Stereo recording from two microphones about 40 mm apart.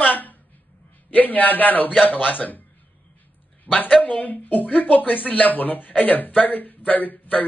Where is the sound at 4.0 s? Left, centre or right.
Left.